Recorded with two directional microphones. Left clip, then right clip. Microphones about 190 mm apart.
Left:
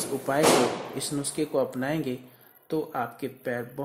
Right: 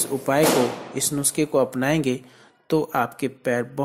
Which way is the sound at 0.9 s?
25° right (ahead or behind).